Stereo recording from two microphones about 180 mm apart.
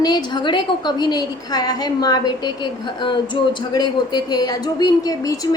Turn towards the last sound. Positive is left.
turn(degrees=20)  # may be behind; listen again after turning